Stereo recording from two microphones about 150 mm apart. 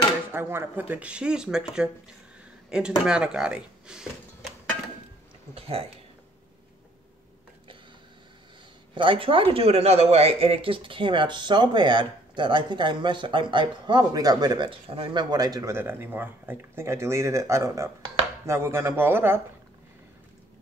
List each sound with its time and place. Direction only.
0.3 s speech: 15° right (ahead or behind)
5.5 s speech: 40° right (ahead or behind)
8.9 s speech: 35° right (ahead or behind); by 19.4 s 15° right (ahead or behind)